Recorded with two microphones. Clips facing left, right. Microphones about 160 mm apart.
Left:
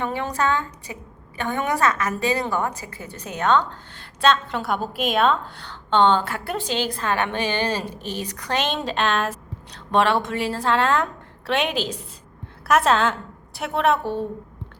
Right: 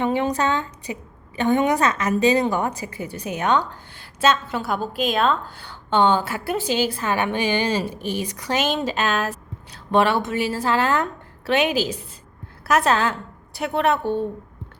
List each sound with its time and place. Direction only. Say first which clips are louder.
0.0 s a woman's voice: right 3 dB; 20° right (ahead or behind); by 14.2 s centre (ahead or behind)